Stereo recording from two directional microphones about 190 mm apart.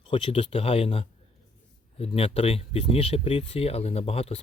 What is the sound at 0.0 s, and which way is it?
Speech, 25° left (ahead or behind).